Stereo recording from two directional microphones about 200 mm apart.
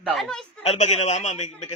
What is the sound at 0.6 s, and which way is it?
Speech, 35° left (ahead or behind).